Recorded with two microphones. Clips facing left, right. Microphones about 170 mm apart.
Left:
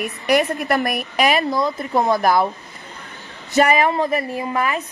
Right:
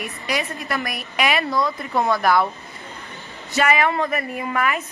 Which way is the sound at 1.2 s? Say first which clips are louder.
Left 3 dB; 40° left (ahead or behind).